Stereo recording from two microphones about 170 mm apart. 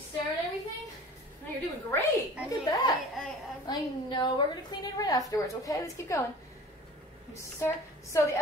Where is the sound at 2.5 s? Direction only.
20° left (ahead or behind).